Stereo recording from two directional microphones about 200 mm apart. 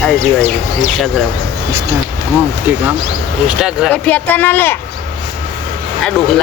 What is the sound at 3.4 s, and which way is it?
Speech, 5° right (ahead or behind).